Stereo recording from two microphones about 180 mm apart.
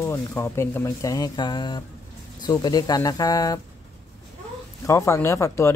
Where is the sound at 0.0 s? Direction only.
15° left (ahead or behind).